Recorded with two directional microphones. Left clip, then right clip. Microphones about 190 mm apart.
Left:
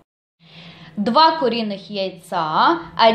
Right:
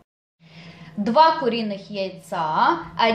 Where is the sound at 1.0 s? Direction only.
30° left (ahead or behind).